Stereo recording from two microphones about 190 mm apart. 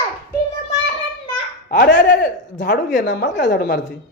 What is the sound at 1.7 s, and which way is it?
Speech, 65° left (ahead or behind).